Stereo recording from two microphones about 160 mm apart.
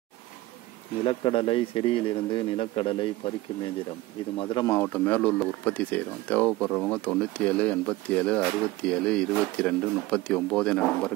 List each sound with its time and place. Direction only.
1.0 s a man's voice: 35° left (ahead or behind)
4.6 s speech: 10° left (ahead or behind)